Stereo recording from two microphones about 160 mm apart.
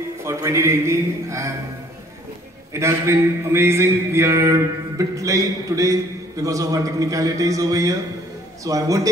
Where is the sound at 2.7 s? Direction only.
15° right (ahead or behind).